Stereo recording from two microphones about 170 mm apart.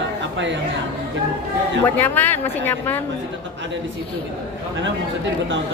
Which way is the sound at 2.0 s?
10° left (ahead or behind).